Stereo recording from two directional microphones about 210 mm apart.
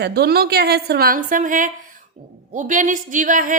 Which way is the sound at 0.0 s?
50° right (ahead or behind).